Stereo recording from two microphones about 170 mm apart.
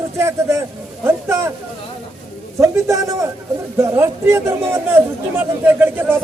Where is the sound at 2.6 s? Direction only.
20° right (ahead or behind).